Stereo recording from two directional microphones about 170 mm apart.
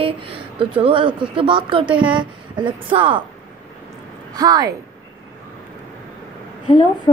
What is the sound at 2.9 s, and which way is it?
Speech, 30° right (ahead or behind).